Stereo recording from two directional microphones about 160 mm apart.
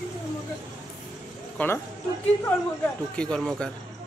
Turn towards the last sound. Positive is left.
turn(degrees=5)  # may be behind; listen again after turning